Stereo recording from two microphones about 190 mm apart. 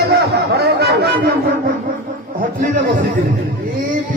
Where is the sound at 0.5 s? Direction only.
55° right (ahead or behind).